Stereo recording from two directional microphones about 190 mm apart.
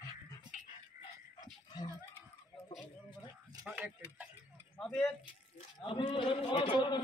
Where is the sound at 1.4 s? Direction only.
20° left (ahead or behind).